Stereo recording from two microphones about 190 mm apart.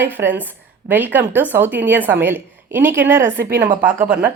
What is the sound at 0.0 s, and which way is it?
A woman's voice, 10° right (ahead or behind).